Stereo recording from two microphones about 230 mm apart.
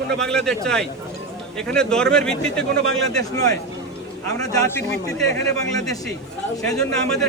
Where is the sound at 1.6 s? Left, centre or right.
Centre.